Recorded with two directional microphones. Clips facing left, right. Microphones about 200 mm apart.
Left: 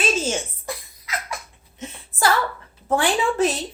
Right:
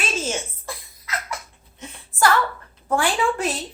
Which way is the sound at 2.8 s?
20° left (ahead or behind).